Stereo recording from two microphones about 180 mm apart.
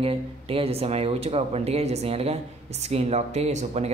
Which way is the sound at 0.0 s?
30° right (ahead or behind).